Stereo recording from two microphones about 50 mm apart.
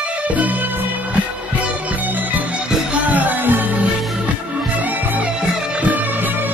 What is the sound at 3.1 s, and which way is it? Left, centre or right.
Music, right.